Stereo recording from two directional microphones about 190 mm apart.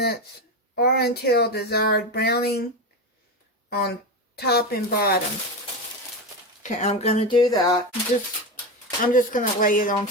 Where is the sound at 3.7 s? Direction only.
55° left (ahead or behind).